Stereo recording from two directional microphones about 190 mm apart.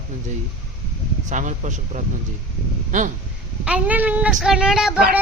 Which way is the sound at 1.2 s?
40° right (ahead or behind).